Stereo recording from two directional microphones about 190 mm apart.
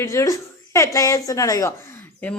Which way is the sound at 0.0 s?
15° left (ahead or behind).